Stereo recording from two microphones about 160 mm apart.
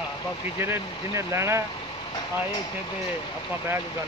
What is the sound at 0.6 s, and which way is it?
Speech, 15° right (ahead or behind).